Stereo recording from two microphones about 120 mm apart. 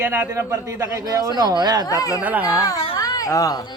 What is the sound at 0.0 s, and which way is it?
A man's voice, 20° right (ahead or behind).